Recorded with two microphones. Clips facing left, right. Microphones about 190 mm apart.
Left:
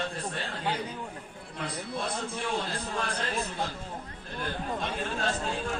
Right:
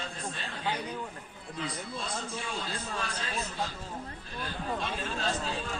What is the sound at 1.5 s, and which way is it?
A man's voice, 55° left (ahead or behind).